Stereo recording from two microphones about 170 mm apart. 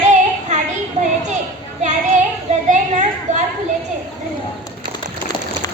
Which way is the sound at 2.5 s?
40° right (ahead or behind).